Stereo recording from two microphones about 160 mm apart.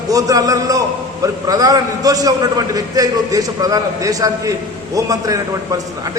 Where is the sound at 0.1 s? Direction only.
20° right (ahead or behind).